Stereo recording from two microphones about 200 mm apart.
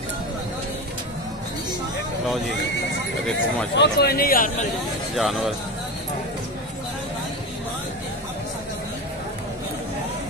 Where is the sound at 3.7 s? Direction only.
55° left (ahead or behind).